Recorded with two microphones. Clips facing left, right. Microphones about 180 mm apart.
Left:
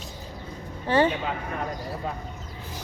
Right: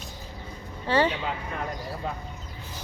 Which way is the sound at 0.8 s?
20° left (ahead or behind).